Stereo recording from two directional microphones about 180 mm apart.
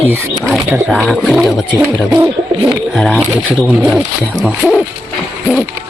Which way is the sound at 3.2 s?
5° right (ahead or behind).